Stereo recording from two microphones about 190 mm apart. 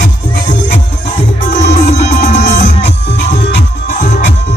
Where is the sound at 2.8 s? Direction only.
65° left (ahead or behind).